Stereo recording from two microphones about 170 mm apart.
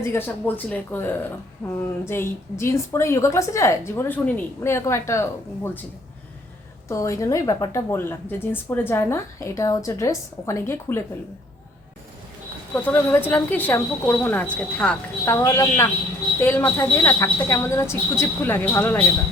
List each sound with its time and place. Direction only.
0.0 s a woman's voice: 15° left (ahead or behind)
6.8 s a woman's voice: 20° left (ahead or behind)
12.7 s a woman's voice: 10° left (ahead or behind)